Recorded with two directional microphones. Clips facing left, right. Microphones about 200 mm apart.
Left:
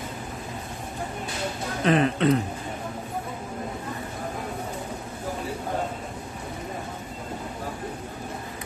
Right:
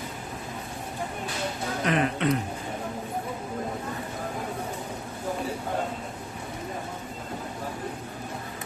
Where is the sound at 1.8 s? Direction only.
30° left (ahead or behind).